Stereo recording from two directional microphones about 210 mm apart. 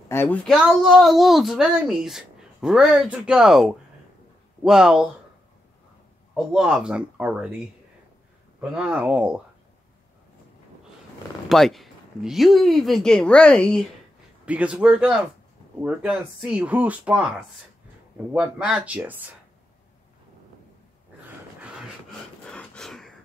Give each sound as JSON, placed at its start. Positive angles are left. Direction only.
{"t": 0.1, "sound": "speech", "side_deg": 10}
{"t": 6.3, "sound": "speech", "side_deg": -5}
{"t": 11.4, "sound": "speech", "side_deg": 0}
{"t": 14.4, "sound": "speech", "side_deg": -5}
{"t": 18.3, "sound": "speech", "side_deg": -5}
{"t": 21.5, "sound": "a sound", "side_deg": -5}